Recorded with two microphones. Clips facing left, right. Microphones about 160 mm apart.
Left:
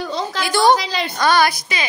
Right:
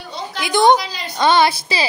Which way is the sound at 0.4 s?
20° right (ahead or behind).